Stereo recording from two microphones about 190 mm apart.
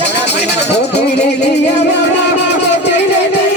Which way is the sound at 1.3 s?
65° left (ahead or behind).